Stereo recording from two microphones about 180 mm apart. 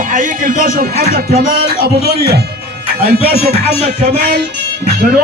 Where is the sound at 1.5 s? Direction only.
55° right (ahead or behind).